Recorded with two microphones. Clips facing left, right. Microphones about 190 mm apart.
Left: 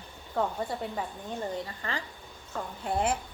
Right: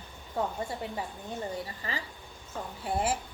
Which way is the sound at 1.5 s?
5° right (ahead or behind).